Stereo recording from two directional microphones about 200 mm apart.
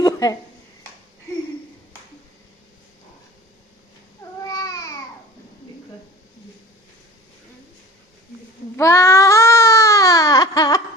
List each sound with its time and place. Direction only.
0.0 s a sound: 20° left (ahead or behind)
4.4 s babbling: 15° left (ahead or behind)
8.7 s baby cry: 15° left (ahead or behind)